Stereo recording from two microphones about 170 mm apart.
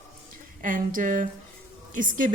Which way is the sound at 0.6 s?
50° right (ahead or behind).